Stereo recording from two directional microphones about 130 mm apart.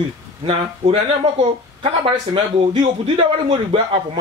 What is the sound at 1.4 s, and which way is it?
Speech, 45° right (ahead or behind).